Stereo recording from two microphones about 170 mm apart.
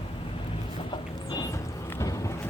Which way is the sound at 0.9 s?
25° left (ahead or behind).